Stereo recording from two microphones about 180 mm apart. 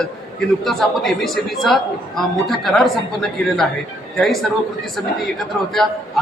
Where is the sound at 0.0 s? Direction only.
5° left (ahead or behind).